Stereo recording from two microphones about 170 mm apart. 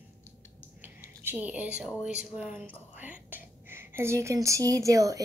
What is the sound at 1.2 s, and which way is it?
A woman's voice, 10° right (ahead or behind).